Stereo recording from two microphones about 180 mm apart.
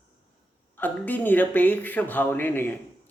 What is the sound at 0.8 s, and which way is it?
Speech, 10° left (ahead or behind).